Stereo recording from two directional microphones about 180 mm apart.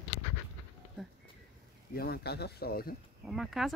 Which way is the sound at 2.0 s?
60° left (ahead or behind).